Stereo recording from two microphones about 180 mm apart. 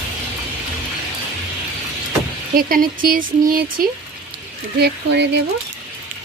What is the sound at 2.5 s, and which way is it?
Speech, 50° right (ahead or behind).